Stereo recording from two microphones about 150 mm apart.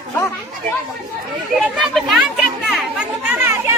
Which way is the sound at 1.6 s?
Centre (ahead or behind).